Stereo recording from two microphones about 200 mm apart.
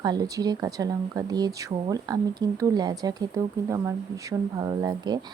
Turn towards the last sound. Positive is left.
turn(degrees=-20)  # may be behind; listen again after turning